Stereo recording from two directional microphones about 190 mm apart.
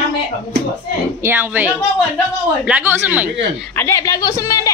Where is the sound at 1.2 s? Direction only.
10° right (ahead or behind).